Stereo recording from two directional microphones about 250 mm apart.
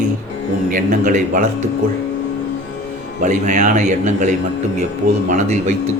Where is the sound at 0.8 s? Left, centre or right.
Right.